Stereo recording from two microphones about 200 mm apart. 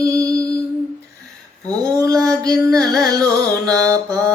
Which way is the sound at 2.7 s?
15° right (ahead or behind).